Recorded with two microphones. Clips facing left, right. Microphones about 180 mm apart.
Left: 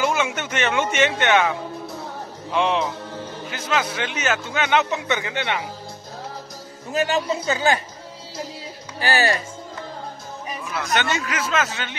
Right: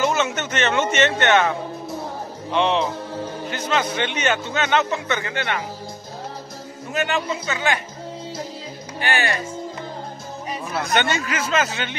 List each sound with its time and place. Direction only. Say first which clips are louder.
0.0 s speech: right 1 dB; 10° left (ahead or behind)
6.9 s speech: left 2 dB; 35° left (ahead or behind)
9.0 s speech: left 3 dB; 35° left (ahead or behind)
11.2 s a man's voice: right 1 dB; centre (ahead or behind)